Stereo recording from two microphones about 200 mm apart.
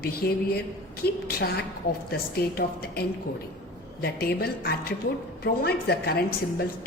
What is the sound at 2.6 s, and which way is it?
A woman's voice, 50° left (ahead or behind).